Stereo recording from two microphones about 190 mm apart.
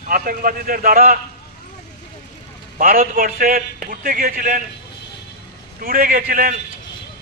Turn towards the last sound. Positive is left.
turn(degrees=-45)  # may be behind; listen again after turning